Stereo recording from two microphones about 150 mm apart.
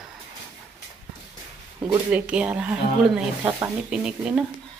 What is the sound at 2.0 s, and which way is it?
A woman's voice, 10° right (ahead or behind).